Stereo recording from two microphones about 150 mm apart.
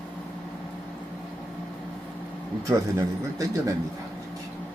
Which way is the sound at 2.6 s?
20° right (ahead or behind).